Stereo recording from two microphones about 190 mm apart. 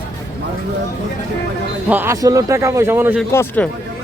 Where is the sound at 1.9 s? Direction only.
10° right (ahead or behind).